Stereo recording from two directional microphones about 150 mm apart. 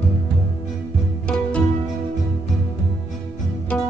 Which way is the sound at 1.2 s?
10° left (ahead or behind).